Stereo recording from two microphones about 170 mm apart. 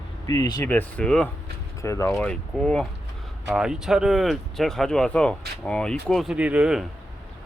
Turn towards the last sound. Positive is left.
turn(degrees=-5)  # may be behind; listen again after turning